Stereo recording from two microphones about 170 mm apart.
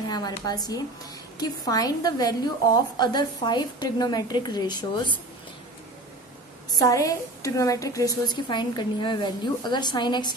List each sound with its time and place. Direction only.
0.1 s a woman's voice: 25° left (ahead or behind)
6.7 s a woman's voice: 20° left (ahead or behind)